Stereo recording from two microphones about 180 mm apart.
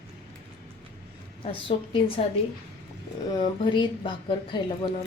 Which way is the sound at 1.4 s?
30° left (ahead or behind).